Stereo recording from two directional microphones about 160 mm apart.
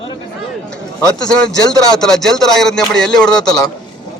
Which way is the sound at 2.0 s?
5° left (ahead or behind).